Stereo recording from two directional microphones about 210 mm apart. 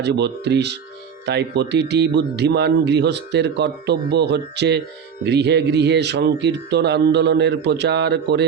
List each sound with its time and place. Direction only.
0.0 s a man's voice: 55° right (ahead or behind)